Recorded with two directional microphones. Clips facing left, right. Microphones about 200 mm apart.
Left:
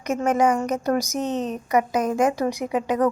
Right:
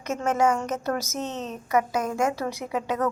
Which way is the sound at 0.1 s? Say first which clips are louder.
Left 3 dB; 15° left (ahead or behind).